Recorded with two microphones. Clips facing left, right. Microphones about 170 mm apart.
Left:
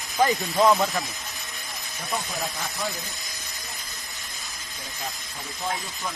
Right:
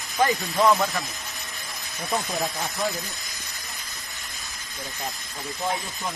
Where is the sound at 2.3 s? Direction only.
20° right (ahead or behind).